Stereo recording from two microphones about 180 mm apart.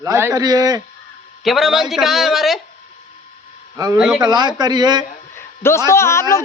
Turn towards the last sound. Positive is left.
turn(degrees=15)  # may be behind; listen again after turning